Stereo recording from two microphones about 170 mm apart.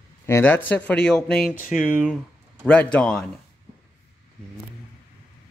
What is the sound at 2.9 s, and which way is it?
Speech, 5° left (ahead or behind).